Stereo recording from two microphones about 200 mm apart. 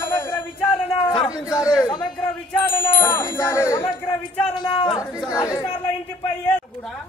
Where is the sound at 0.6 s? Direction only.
10° left (ahead or behind).